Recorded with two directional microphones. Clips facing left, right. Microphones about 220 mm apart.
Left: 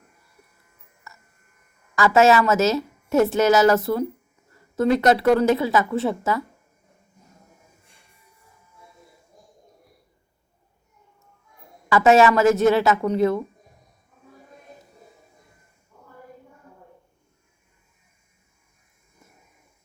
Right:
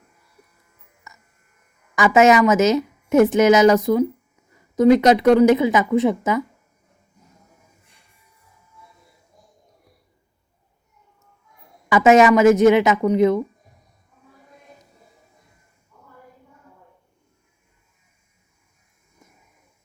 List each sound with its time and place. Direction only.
1.1 s electric shaver: 15° right (ahead or behind)
2.0 s a woman's voice: 15° right (ahead or behind)
11.9 s a woman's voice: 15° right (ahead or behind)